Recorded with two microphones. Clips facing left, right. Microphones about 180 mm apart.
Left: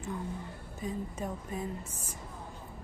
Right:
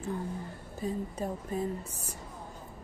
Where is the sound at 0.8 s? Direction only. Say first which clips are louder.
Right 3 dB; 35° right (ahead or behind).